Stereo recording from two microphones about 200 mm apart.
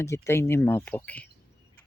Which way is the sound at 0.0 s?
15° left (ahead or behind).